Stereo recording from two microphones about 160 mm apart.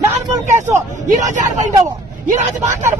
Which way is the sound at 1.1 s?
50° right (ahead or behind).